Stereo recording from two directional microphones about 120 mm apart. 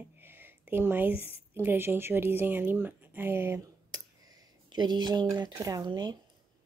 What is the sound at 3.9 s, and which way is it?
A woman's voice, 35° right (ahead or behind).